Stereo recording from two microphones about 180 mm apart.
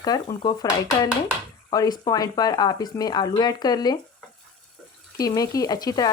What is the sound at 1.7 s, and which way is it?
Speech, 20° left (ahead or behind).